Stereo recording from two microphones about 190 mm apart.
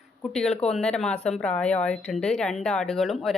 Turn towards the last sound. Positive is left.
turn(degrees=0)  # may be behind; listen again after turning